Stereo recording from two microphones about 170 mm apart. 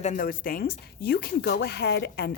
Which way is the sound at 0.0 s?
50° left (ahead or behind).